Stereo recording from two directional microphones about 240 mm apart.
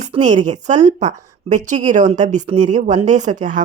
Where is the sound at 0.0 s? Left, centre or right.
Right.